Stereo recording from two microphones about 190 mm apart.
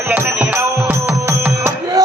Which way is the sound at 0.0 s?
10° right (ahead or behind).